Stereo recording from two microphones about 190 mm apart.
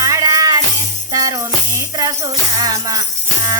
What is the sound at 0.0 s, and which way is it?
Music, 15° right (ahead or behind).